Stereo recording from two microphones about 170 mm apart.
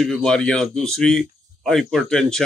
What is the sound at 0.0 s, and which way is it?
Speech, 5° left (ahead or behind).